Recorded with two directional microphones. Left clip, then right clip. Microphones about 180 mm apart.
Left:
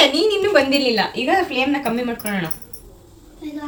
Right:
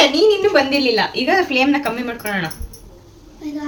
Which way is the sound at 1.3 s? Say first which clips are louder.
Right 4 dB; 25° right (ahead or behind).